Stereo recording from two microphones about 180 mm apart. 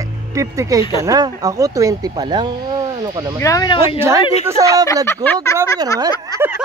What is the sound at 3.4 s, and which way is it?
Speech, 20° left (ahead or behind).